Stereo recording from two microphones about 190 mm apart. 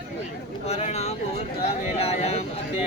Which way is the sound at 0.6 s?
35° left (ahead or behind).